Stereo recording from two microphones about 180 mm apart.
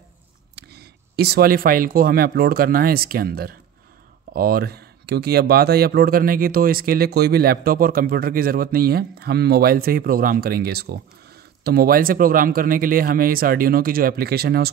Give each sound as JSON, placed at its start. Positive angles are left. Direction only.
{"t": 0.6, "sound": "speech", "side_deg": -65}